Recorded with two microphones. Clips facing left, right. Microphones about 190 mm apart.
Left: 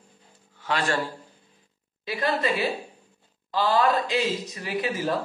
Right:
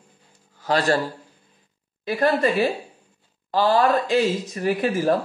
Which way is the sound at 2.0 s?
50° right (ahead or behind).